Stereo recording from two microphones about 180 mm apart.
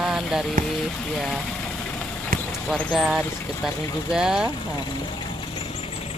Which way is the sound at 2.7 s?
Centre (ahead or behind).